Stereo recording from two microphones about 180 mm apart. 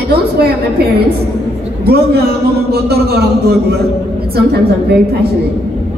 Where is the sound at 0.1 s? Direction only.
60° right (ahead or behind).